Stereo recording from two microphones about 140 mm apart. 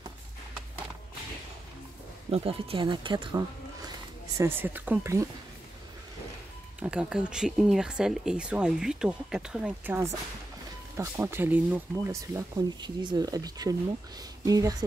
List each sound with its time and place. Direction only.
2.3 s speech: 40° right (ahead or behind)
4.4 s speech: 15° right (ahead or behind)
6.8 s speech: 10° right (ahead or behind); by 14.9 s 25° right (ahead or behind)